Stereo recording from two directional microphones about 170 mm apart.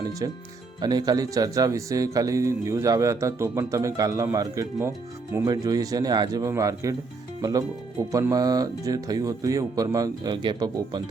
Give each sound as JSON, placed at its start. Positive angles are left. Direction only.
{"t": 0.2, "sound": "speech", "side_deg": -20}